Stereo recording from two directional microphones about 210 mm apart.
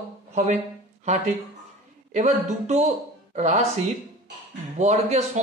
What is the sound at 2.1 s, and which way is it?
Speech, 35° right (ahead or behind).